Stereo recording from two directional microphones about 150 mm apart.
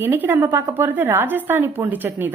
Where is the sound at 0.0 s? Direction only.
15° right (ahead or behind).